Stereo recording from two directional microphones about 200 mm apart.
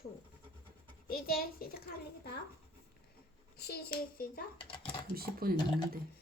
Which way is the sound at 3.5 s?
50° left (ahead or behind).